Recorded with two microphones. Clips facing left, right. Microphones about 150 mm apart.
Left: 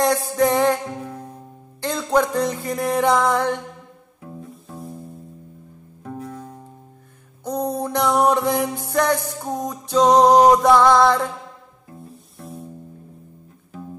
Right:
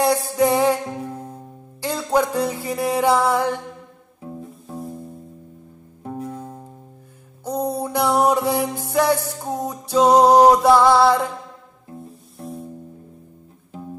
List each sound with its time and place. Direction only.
0.0 s music: 10° right (ahead or behind)
1.8 s music: 10° right (ahead or behind)
4.2 s music: 25° right (ahead or behind)
4.7 s music: centre (ahead or behind)
6.0 s music: 25° right (ahead or behind)
7.4 s music: 10° right (ahead or behind)
12.4 s music: centre (ahead or behind)